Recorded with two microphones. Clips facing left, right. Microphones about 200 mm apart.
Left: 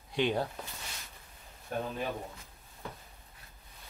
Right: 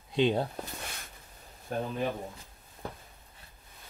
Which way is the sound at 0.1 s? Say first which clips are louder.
Right 4 dB; 25° right (ahead or behind).